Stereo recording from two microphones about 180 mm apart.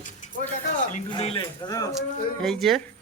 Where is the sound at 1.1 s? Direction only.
30° left (ahead or behind).